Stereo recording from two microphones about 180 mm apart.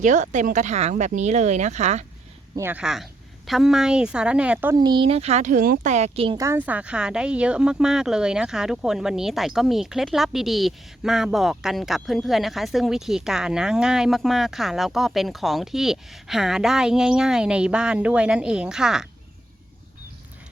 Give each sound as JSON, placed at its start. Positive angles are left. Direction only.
{"t": 0.0, "sound": "speech", "side_deg": -40}
{"t": 2.6, "sound": "speech", "side_deg": -10}
{"t": 4.8, "sound": "speech", "side_deg": -25}
{"t": 6.3, "sound": "speech", "side_deg": -15}